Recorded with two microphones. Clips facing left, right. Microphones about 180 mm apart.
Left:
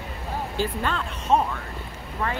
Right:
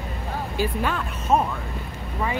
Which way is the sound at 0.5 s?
10° right (ahead or behind).